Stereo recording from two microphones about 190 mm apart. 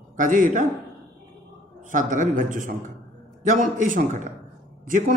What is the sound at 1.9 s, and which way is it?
Speech, 45° right (ahead or behind).